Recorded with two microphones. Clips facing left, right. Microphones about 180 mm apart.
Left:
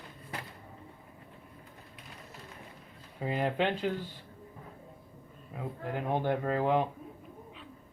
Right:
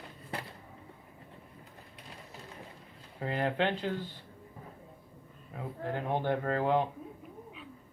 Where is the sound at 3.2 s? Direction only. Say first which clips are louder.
Left 1 dB; 10° left (ahead or behind).